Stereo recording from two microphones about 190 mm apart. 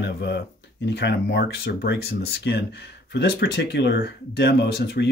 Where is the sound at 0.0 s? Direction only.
65° left (ahead or behind).